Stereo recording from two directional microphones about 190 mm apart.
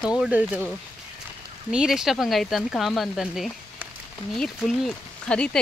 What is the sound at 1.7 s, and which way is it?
Speech, 5° right (ahead or behind).